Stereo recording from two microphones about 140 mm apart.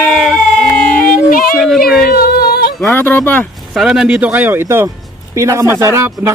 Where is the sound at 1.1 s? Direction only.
90° left.